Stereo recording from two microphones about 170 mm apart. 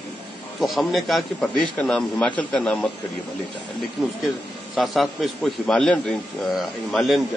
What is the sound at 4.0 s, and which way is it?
A man's voice, centre (ahead or behind).